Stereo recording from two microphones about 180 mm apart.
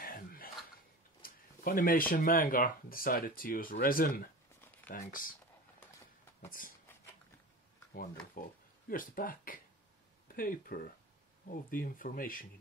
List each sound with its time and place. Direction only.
0.0 s throat clearing: 55° left (ahead or behind)
1.2 s speech: 50° left (ahead or behind)
6.6 s speech: 50° left (ahead or behind)
8.4 s speech: 50° left (ahead or behind)